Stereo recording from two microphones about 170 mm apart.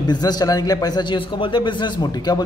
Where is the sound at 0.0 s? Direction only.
25° left (ahead or behind).